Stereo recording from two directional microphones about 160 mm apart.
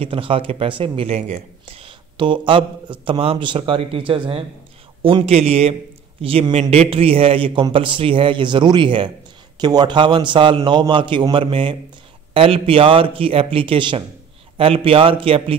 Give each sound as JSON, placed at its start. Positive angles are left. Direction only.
{"t": 0.0, "sound": "speech", "side_deg": -35}